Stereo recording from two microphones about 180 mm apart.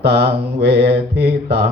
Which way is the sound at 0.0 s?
70° right (ahead or behind).